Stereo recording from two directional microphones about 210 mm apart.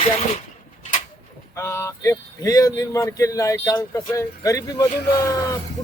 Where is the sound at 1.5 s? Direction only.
15° left (ahead or behind).